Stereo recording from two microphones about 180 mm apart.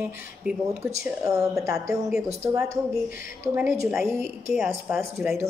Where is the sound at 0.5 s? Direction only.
5° right (ahead or behind).